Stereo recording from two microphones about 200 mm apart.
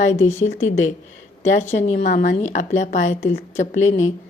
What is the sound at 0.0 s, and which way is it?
Speech, 35° left (ahead or behind).